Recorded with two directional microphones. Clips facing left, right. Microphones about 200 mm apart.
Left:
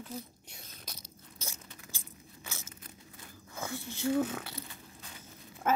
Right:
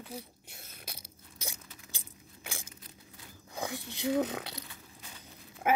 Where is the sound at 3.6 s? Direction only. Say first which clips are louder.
Right 1 dB; 15° right (ahead or behind).